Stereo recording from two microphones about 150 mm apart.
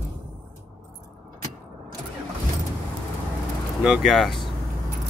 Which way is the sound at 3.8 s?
Centre (ahead or behind).